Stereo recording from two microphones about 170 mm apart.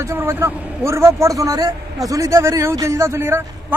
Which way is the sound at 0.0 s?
15° right (ahead or behind).